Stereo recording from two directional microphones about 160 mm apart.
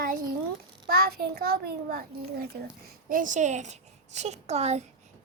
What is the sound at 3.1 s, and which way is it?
Speech, 55° right (ahead or behind).